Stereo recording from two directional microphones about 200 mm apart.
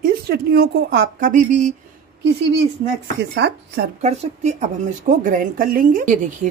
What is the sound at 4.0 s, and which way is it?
Speech, 35° right (ahead or behind).